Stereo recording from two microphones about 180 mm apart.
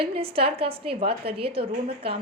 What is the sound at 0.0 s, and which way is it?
A woman's voice, 30° right (ahead or behind).